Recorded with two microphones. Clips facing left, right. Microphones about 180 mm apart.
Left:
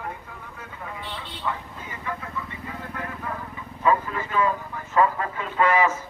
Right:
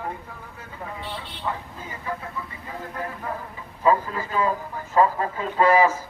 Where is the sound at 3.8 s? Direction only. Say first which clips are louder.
Right 2 dB; 30° right (ahead or behind).